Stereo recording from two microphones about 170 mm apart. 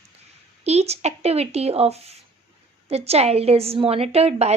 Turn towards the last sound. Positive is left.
turn(degrees=-40)  # may be behind; listen again after turning